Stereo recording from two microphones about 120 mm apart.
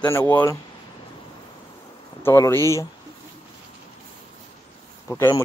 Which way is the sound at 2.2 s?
20° left (ahead or behind).